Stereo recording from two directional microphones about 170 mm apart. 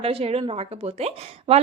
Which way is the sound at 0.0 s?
35° right (ahead or behind).